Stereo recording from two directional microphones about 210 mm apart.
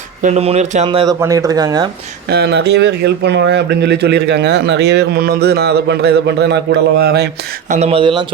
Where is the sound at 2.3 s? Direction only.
50° right (ahead or behind).